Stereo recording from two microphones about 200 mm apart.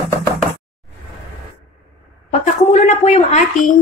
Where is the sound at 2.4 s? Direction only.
35° left (ahead or behind).